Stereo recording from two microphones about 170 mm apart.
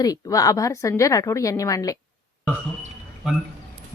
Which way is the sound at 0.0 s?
20° left (ahead or behind).